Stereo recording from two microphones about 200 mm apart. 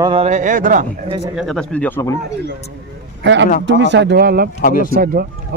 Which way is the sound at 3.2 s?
65° right (ahead or behind).